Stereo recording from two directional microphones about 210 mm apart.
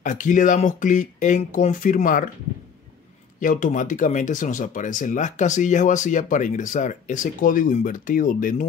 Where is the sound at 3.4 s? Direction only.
40° left (ahead or behind).